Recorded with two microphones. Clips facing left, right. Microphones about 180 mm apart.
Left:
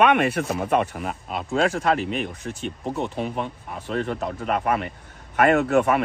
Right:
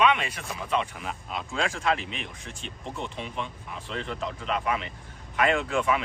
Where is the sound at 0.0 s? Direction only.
60° left (ahead or behind).